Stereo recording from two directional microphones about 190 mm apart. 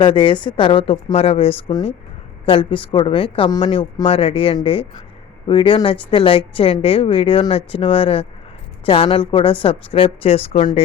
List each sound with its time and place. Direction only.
0.0 s a woman's voice: 25° left (ahead or behind)